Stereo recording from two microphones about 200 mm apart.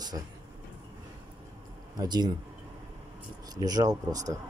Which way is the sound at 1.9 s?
20° right (ahead or behind).